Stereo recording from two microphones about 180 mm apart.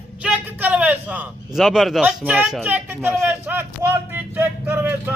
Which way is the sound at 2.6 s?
10° right (ahead or behind).